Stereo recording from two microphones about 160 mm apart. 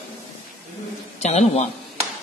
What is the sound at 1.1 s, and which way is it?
Speech, 40° left (ahead or behind).